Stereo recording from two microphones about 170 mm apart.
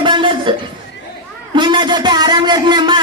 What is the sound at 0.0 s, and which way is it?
Chuckle, 30° right (ahead or behind).